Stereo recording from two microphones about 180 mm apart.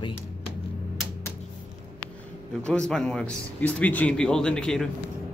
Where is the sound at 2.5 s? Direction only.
5° left (ahead or behind).